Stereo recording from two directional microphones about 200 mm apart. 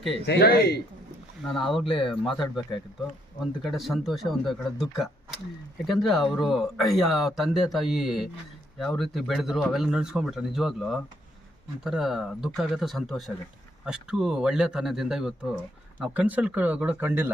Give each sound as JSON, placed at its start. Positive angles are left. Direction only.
{"t": 0.3, "sound": "a man's voice", "side_deg": 50}
{"t": 1.5, "sound": "speech", "side_deg": 0}